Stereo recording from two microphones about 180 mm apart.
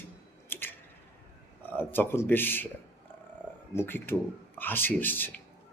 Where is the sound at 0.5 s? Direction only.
10° left (ahead or behind).